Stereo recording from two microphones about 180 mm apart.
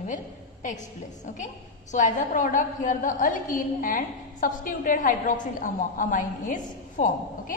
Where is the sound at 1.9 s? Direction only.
45° left (ahead or behind).